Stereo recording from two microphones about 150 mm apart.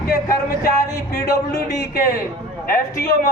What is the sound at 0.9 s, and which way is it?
Speech, 25° left (ahead or behind).